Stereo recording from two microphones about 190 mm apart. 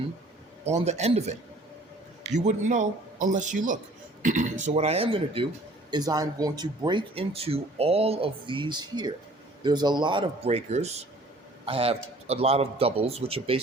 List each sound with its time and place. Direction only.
0.6 s a man's voice: 35° right (ahead or behind)